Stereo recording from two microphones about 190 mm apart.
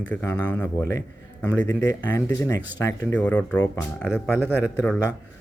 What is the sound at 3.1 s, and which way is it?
Speech, 5° left (ahead or behind).